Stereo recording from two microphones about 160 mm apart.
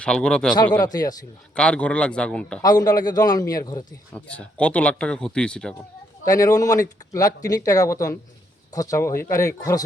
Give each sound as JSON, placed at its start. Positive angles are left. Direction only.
{"t": 0.0, "sound": "speech", "side_deg": 5}
{"t": 0.8, "sound": "speech", "side_deg": 25}
{"t": 1.5, "sound": "speech", "side_deg": 5}
{"t": 2.6, "sound": "speech", "side_deg": 25}
{"t": 4.1, "sound": "speech", "side_deg": 5}
{"t": 6.2, "sound": "speech", "side_deg": 20}